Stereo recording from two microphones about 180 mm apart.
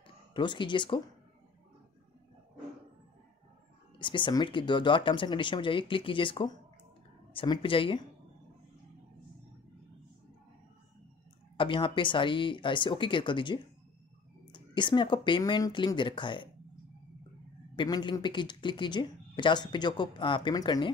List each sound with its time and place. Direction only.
0.3 s speech: 25° left (ahead or behind)
4.0 s speech: 25° left (ahead or behind)
11.5 s speech: 30° left (ahead or behind)
17.7 s speech: 25° left (ahead or behind)